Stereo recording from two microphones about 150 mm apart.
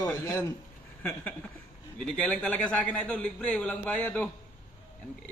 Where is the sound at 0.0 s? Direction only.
20° left (ahead or behind).